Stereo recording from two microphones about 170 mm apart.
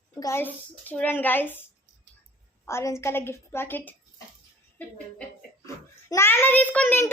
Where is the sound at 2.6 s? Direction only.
15° left (ahead or behind).